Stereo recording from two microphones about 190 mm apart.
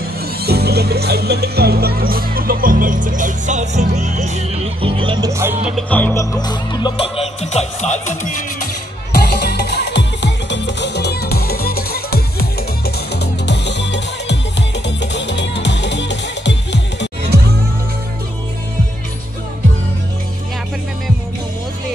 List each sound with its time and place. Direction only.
0.4 s speech: 55° right (ahead or behind); by 5.9 s 5° right (ahead or behind)
5.9 s music: 10° left (ahead or behind)
6.3 s music: 20° left (ahead or behind); by 8.4 s 40° left (ahead or behind)
9.1 s music: 60° left (ahead or behind)